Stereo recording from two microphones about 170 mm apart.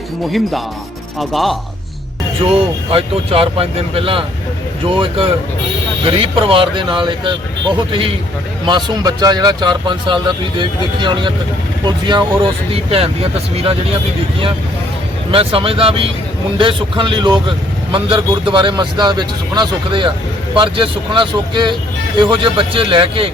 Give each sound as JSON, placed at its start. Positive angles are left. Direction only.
{"t": 1.2, "sound": "speech", "side_deg": 0}
{"t": 2.4, "sound": "speech", "side_deg": -35}
{"t": 15.3, "sound": "speech", "side_deg": -35}